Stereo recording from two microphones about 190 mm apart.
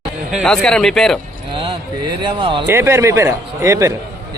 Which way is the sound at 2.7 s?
15° right (ahead or behind).